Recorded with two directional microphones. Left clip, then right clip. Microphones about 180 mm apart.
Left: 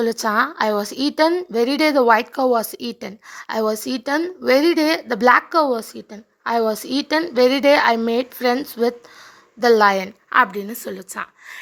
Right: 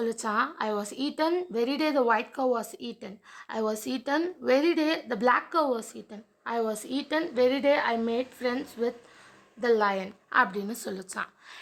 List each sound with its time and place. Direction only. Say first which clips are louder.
0.0 s speech: left 9 dB; 35° left (ahead or behind)
10.2 s a woman's voice: left 8 dB; 20° left (ahead or behind)